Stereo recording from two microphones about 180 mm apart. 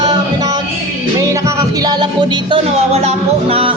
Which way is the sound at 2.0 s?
25° right (ahead or behind).